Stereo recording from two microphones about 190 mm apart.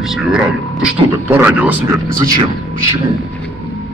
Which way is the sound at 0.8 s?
10° right (ahead or behind).